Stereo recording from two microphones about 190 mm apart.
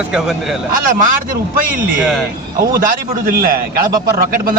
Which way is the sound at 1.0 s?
45° right (ahead or behind).